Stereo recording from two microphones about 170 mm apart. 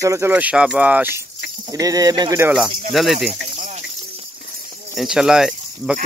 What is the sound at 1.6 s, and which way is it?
Speech, 20° right (ahead or behind).